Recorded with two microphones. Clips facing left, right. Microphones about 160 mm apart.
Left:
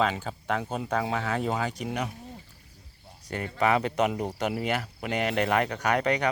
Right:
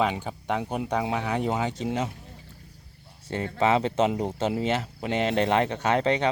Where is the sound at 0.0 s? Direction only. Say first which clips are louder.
Right 1 dB; 15° right (ahead or behind).